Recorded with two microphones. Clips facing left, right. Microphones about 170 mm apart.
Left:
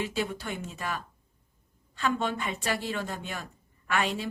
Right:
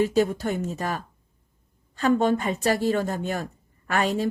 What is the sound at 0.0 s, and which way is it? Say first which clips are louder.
Speech: right 10 dB; 45° right (ahead or behind).